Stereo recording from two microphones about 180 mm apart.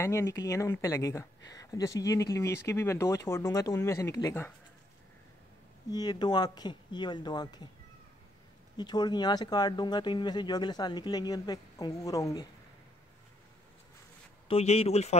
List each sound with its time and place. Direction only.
0.0 s speech: 15° left (ahead or behind)
5.9 s speech: 25° left (ahead or behind)
8.7 s speech: 25° left (ahead or behind)
14.5 s speech: 35° left (ahead or behind)